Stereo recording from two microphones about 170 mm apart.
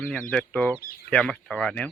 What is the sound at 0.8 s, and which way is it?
Speech, 60° left (ahead or behind).